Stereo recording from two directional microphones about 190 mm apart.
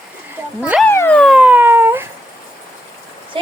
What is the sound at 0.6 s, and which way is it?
Speech, 5° right (ahead or behind).